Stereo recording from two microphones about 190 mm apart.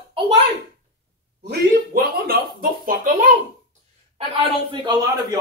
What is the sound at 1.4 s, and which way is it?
Speech, 50° right (ahead or behind).